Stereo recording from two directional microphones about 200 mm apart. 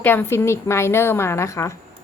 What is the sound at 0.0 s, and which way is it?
A woman's voice, 10° left (ahead or behind).